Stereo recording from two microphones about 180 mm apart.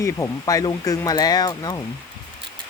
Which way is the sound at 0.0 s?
20° left (ahead or behind).